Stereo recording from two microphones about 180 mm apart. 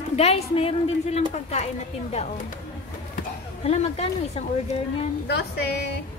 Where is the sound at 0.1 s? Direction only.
35° left (ahead or behind).